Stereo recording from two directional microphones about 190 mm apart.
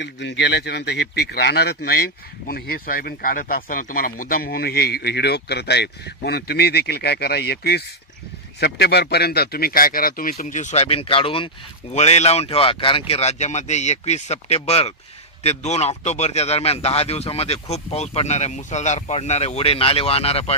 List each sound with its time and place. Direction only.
0.0 s a man's voice: 65° left (ahead or behind); by 20.5 s 30° left (ahead or behind)